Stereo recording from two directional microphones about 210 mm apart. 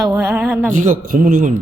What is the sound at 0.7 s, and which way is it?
Speech, 40° right (ahead or behind).